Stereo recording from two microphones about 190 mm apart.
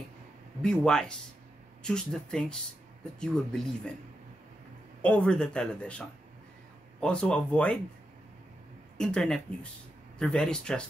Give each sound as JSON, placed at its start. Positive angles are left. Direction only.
{"t": 0.6, "sound": "speech", "side_deg": 5}
{"t": 5.0, "sound": "speech", "side_deg": 5}
{"t": 8.9, "sound": "speech", "side_deg": 5}